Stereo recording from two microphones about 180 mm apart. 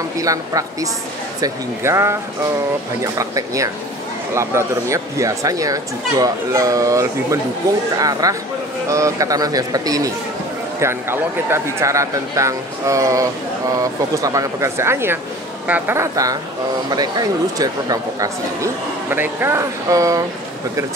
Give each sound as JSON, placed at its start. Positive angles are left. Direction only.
{"t": 0.2, "sound": "speech", "side_deg": -20}